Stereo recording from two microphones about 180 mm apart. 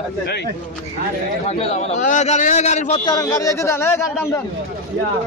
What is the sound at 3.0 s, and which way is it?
Speech, 20° left (ahead or behind).